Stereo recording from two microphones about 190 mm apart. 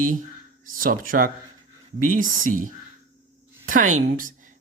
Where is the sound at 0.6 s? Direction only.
45° right (ahead or behind).